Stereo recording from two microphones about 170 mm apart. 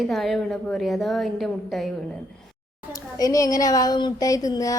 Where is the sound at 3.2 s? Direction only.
20° left (ahead or behind).